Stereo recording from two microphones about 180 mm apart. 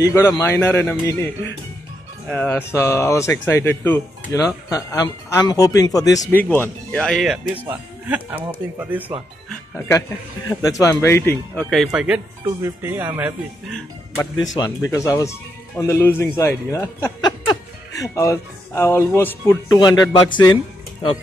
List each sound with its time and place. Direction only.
0.0 s speech: 20° left (ahead or behind); by 7.3 s 5° left (ahead or behind)
7.6 s speech: 10° right (ahead or behind)
9.8 s speech: 15° left (ahead or behind)
11.7 s speech: centre (ahead or behind)
12.4 s speech: 15° right (ahead or behind)
14.5 s speech: 20° left (ahead or behind)